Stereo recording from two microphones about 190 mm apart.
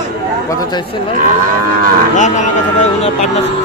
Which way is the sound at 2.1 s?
40° left (ahead or behind).